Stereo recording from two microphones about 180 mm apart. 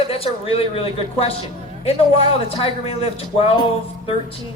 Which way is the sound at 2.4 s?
30° left (ahead or behind).